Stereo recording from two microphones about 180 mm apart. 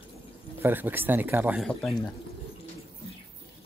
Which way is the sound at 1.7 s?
5° left (ahead or behind).